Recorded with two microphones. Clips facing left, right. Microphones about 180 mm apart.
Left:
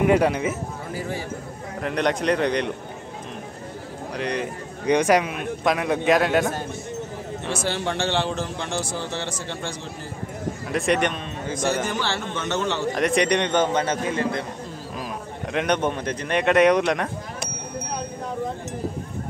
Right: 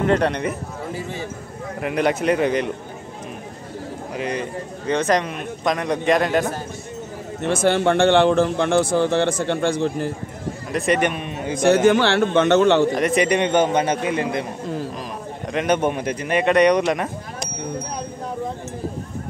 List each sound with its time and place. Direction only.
0.0 s a man's voice: 10° left (ahead or behind)
1.8 s a man's voice: 5° right (ahead or behind)
4.2 s a man's voice: centre (ahead or behind)
4.8 s a man's voice: 10° left (ahead or behind)
7.4 s a man's voice: 55° right (ahead or behind)
10.7 s a man's voice: centre (ahead or behind)
11.5 s a man's voice: 60° right (ahead or behind)
12.9 s a man's voice: centre (ahead or behind)
15.5 s a man's voice: 5° right (ahead or behind)